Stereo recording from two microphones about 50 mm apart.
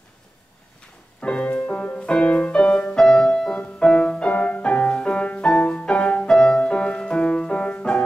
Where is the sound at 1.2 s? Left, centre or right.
Left.